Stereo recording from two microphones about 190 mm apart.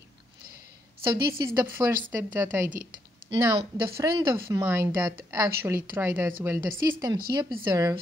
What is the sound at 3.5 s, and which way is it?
A woman's voice, 30° right (ahead or behind).